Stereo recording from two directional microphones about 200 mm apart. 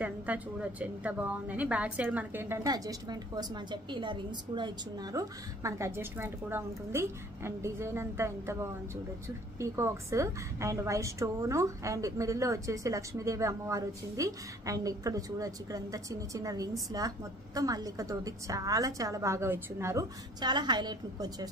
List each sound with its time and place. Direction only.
0.0 s a woman's voice: 10° right (ahead or behind)